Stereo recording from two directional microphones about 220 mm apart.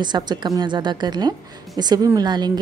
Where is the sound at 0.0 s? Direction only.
20° right (ahead or behind).